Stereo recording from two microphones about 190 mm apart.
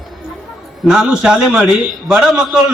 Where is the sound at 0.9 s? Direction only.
5° right (ahead or behind).